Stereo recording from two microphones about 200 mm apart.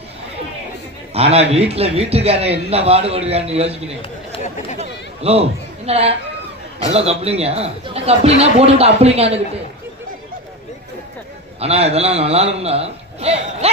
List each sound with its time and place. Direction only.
1.1 s a man's voice: 30° right (ahead or behind)
4.3 s chatter: 35° left (ahead or behind)
4.8 s a sound: 30° right (ahead or behind)
6.9 s a man's voice: 30° right (ahead or behind)
11.6 s a man's voice: 30° right (ahead or behind)